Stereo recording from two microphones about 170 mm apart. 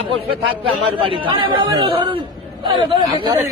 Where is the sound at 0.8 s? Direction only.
30° right (ahead or behind).